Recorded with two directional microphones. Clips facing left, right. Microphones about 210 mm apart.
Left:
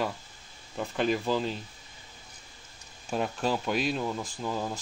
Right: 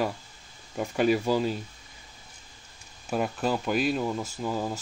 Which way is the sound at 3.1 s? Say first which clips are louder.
Right 2 dB; 5° right (ahead or behind).